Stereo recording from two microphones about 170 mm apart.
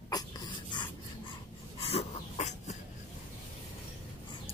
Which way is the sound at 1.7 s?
40° left (ahead or behind).